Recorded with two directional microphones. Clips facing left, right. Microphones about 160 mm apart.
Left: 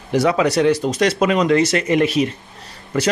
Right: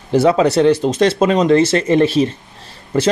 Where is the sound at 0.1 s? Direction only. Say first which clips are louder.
Right 4 dB; 30° right (ahead or behind).